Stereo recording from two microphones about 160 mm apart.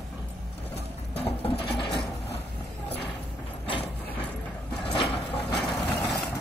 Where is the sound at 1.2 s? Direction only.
35° left (ahead or behind).